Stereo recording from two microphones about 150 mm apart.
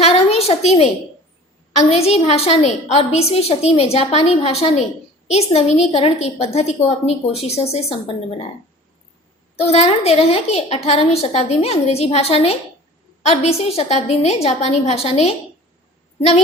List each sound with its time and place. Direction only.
0.0 s a sound: 45° left (ahead or behind)
1.8 s a woman's voice: 45° left (ahead or behind)
9.6 s a woman's voice: 45° left (ahead or behind)